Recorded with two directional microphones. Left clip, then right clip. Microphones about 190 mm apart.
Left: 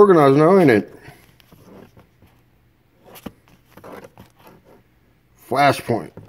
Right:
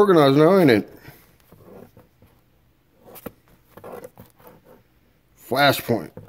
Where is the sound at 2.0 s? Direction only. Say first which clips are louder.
Left 1 dB; 5° left (ahead or behind).